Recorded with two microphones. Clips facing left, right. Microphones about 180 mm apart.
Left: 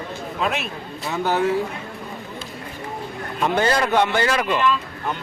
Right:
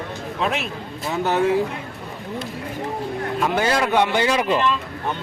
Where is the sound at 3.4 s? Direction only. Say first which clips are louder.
Left 2 dB; 5° right (ahead or behind).